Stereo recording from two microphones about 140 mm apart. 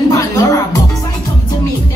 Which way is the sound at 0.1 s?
25° left (ahead or behind).